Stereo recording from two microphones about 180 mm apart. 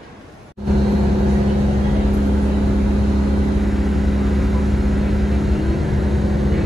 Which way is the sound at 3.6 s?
Centre (ahead or behind).